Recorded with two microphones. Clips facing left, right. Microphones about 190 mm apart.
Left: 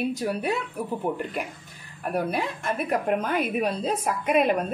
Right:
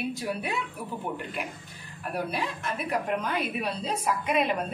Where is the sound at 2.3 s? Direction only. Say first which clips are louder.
Left 4 dB; 50° left (ahead or behind).